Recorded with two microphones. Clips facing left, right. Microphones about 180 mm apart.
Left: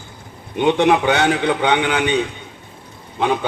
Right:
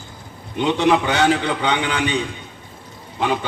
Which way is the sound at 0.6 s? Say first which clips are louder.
Left 2 dB; 60° left (ahead or behind).